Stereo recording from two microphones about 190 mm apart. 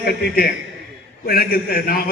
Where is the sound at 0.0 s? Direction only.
55° left (ahead or behind).